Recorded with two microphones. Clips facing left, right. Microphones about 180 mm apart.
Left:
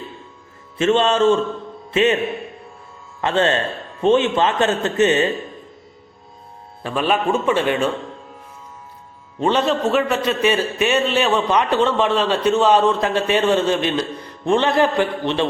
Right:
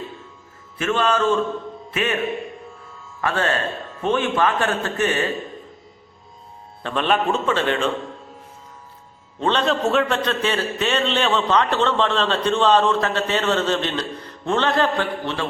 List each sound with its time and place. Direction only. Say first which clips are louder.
0.8 s a man's voice: left 5 dB; 25° left (ahead or behind)
3.2 s a man's voice: left 4 dB; 25° left (ahead or behind)
6.8 s a man's voice: left 1 dB; 5° left (ahead or behind)
9.4 s a man's voice: left 2 dB; 10° left (ahead or behind)